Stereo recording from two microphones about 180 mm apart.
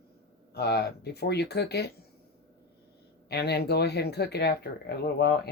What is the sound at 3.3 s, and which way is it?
Speech, 65° left (ahead or behind).